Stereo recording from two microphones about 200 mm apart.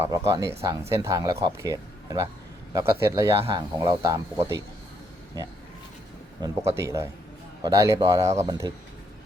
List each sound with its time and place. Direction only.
0.0 s speech: 15° right (ahead or behind)
6.4 s speech: 15° right (ahead or behind)